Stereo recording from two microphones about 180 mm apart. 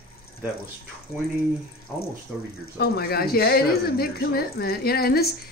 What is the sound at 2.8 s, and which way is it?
A woman's voice, 60° left (ahead or behind).